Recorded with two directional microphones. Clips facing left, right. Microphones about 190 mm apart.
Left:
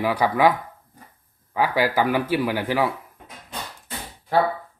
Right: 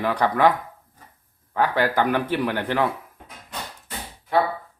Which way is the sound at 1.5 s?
10° left (ahead or behind).